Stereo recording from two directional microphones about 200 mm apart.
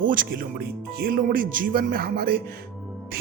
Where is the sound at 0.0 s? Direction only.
45° right (ahead or behind).